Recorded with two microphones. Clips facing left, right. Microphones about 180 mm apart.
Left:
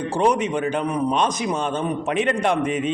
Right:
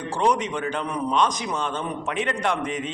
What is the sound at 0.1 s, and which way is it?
A man's voice, 15° left (ahead or behind).